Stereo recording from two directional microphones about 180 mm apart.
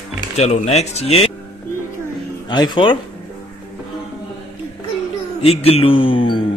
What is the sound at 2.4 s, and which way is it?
Speech, 25° left (ahead or behind).